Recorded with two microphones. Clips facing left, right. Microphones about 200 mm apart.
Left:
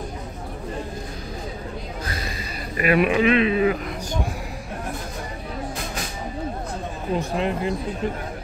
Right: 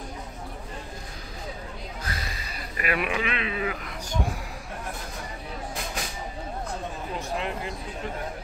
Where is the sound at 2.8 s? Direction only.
25° left (ahead or behind).